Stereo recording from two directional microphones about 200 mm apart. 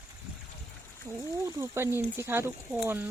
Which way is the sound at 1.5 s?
15° right (ahead or behind).